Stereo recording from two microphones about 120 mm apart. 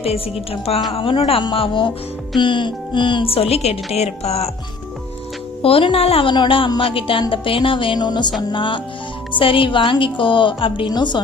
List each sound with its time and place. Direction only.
0.5 s a woman's voice: 55° left (ahead or behind)
5.6 s a woman's voice: 50° left (ahead or behind)